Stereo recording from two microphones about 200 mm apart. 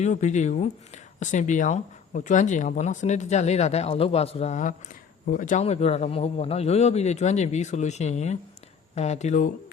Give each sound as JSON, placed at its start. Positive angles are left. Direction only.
{"t": 0.0, "sound": "speech", "side_deg": 35}